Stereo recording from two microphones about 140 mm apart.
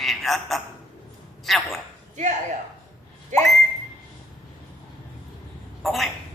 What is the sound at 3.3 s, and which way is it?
Whistling, 60° right (ahead or behind).